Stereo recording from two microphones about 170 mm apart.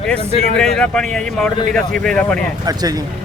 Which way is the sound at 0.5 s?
5° left (ahead or behind).